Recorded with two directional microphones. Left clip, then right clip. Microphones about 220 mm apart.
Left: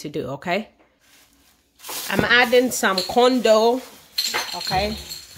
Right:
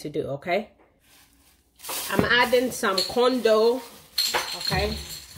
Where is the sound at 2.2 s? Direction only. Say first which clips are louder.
Left 4 dB; 50° left (ahead or behind).